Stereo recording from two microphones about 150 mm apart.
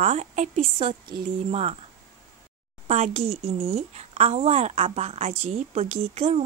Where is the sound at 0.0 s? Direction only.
45° right (ahead or behind).